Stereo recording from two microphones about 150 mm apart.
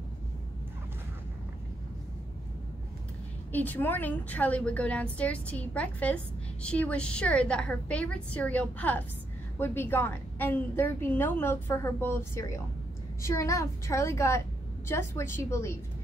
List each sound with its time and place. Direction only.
3.5 s a woman's voice: 10° left (ahead or behind)